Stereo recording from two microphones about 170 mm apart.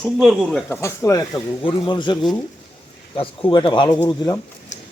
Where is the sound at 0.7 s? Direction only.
15° left (ahead or behind).